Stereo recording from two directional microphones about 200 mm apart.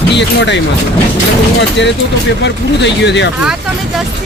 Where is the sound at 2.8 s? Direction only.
60° left (ahead or behind).